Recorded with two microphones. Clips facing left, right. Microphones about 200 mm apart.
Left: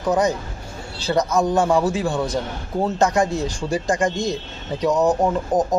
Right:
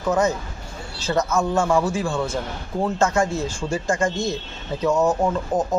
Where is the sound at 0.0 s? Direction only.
15° left (ahead or behind).